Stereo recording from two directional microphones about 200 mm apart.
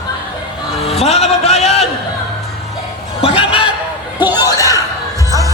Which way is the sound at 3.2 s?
25° left (ahead or behind).